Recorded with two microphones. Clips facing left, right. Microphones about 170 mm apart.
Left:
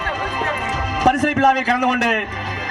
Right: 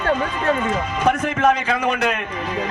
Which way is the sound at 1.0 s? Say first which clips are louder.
Left 4 dB; 75° left (ahead or behind).